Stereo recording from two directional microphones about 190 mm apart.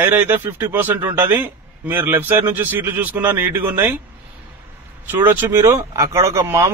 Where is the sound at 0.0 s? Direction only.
10° right (ahead or behind).